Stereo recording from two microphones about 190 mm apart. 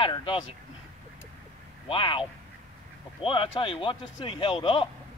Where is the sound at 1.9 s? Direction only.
25° left (ahead or behind).